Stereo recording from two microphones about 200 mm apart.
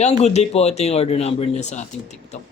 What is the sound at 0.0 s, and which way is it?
A man's voice, 35° left (ahead or behind).